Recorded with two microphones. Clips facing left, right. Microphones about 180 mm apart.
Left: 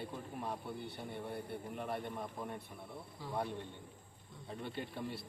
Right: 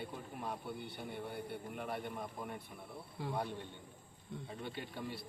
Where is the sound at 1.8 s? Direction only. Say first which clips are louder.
Left 1 dB; 5° right (ahead or behind).